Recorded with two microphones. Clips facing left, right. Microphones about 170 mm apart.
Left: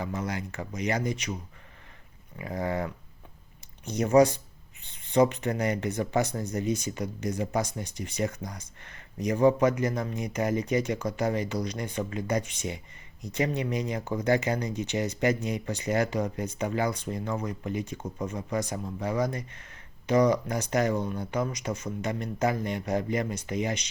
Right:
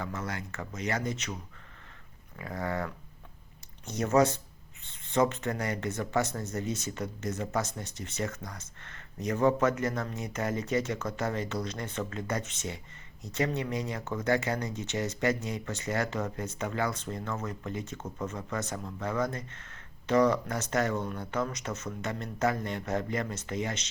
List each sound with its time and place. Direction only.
0.0 s speech: 20° left (ahead or behind)
2.3 s a sound: 20° left (ahead or behind)
3.9 s speech: 15° left (ahead or behind)